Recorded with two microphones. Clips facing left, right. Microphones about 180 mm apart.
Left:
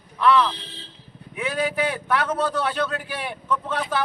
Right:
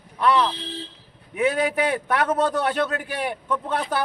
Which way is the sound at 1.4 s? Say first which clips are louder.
Right 3 dB; 50° right (ahead or behind).